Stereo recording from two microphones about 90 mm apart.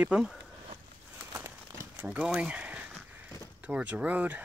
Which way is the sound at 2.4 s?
15° right (ahead or behind).